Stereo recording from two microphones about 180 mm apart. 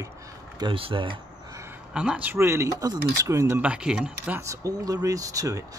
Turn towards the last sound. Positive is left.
turn(degrees=-20)  # may be behind; listen again after turning